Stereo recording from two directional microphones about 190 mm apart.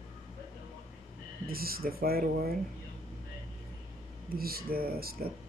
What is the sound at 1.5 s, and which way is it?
Speech, 50° right (ahead or behind).